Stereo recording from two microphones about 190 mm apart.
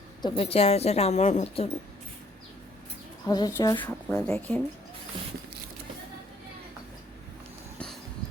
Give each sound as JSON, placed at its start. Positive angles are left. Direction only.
{"t": 0.2, "sound": "speech", "side_deg": 25}
{"t": 3.2, "sound": "a woman's voice", "side_deg": 20}